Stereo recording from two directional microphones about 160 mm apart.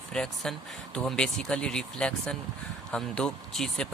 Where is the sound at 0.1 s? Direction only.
5° left (ahead or behind).